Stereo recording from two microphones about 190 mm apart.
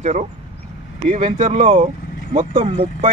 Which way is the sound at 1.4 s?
35° right (ahead or behind).